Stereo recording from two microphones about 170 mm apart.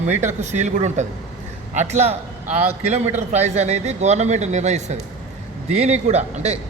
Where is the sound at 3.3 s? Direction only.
40° right (ahead or behind).